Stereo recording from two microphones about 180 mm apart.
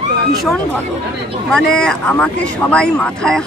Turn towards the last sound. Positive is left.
turn(degrees=5)  # may be behind; listen again after turning